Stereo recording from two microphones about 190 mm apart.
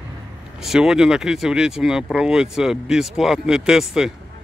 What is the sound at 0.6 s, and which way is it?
Speech, 5° right (ahead or behind).